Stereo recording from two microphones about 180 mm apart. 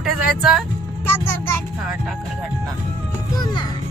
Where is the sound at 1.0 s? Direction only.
10° left (ahead or behind).